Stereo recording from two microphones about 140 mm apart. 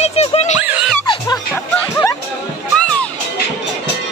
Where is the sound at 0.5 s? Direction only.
10° right (ahead or behind).